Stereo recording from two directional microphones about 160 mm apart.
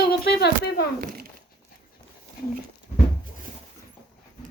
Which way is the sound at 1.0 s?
70° right (ahead or behind).